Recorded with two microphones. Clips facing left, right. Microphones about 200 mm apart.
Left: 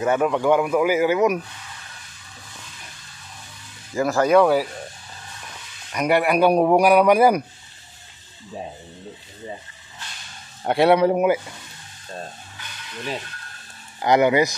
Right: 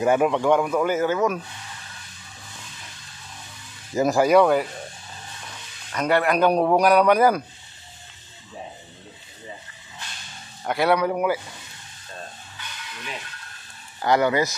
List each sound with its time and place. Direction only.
0.0 s a man's voice: 10° right (ahead or behind)
0.3 s a man's voice: 5° left (ahead or behind)
3.9 s speech: 20° right (ahead or behind)
4.2 s speech: centre (ahead or behind)
5.9 s a man's voice: 10° left (ahead or behind)
10.6 s speech: 30° left (ahead or behind)
14.0 s a man's voice: 20° left (ahead or behind)